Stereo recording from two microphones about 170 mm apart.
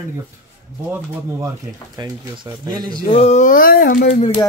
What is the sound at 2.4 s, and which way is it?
Speech, 25° right (ahead or behind).